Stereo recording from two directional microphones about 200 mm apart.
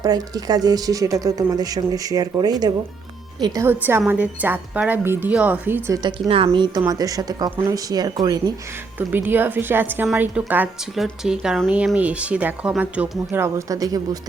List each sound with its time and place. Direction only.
0.0 s a woman's voice: 20° right (ahead or behind)
6.0 s a woman's voice: 25° right (ahead or behind)